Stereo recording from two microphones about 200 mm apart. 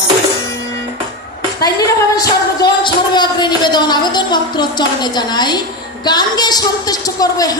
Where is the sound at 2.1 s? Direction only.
20° left (ahead or behind).